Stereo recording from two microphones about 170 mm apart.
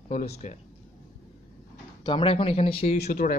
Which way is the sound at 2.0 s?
30° left (ahead or behind).